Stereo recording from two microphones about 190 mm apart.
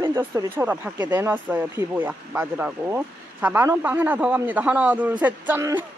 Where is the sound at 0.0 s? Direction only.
15° right (ahead or behind).